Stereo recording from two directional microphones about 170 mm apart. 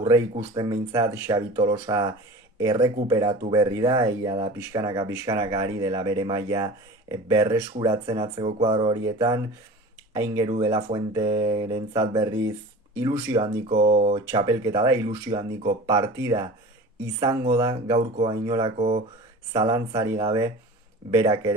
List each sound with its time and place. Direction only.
0.5 s speech: 25° right (ahead or behind)
13.3 s speech: 35° right (ahead or behind)
18.8 s speech: 35° right (ahead or behind)
19.5 s speech: 25° right (ahead or behind)